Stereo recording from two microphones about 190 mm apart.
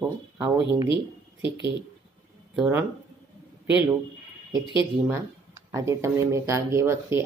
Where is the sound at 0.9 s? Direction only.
25° left (ahead or behind).